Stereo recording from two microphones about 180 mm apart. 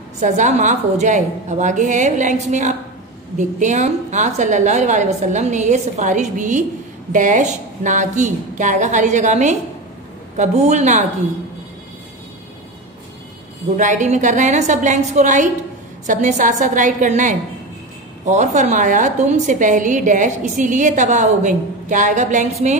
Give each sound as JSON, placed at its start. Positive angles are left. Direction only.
{"t": 0.2, "sound": "a woman's voice", "side_deg": -40}
{"t": 13.7, "sound": "a woman's voice", "side_deg": -45}